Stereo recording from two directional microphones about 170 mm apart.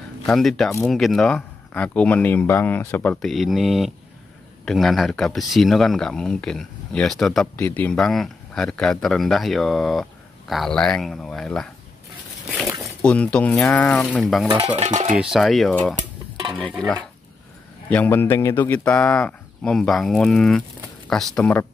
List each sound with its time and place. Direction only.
0.3 s speech: centre (ahead or behind)
14.8 s stir: 45° right (ahead or behind)
15.3 s speech: centre (ahead or behind)